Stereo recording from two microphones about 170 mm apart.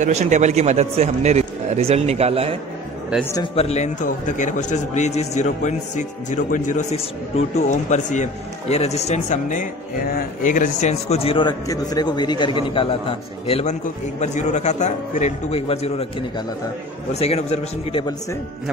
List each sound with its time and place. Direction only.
0.0 s speech: 45° right (ahead or behind)
3.5 s a man's voice: 40° left (ahead or behind)